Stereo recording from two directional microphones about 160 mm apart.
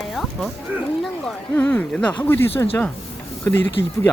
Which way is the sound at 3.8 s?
15° left (ahead or behind).